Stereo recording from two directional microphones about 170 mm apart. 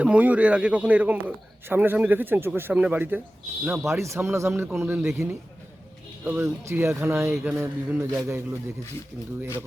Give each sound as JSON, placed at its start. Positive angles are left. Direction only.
{"t": 0.0, "sound": "a man's voice", "side_deg": -10}